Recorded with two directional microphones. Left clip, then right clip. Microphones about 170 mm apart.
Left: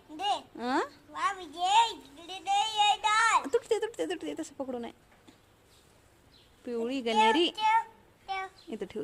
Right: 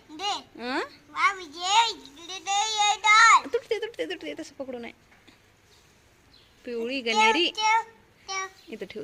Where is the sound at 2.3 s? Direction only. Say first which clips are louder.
Right 2 dB; 55° left (ahead or behind).